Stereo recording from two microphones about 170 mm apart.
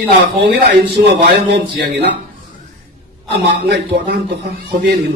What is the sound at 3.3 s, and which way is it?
Speech, 70° right (ahead or behind).